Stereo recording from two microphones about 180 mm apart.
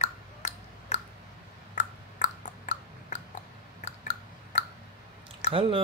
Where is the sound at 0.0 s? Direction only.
40° left (ahead or behind).